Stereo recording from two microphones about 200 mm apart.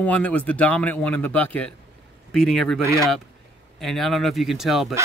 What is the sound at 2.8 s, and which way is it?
Speech, 15° right (ahead or behind).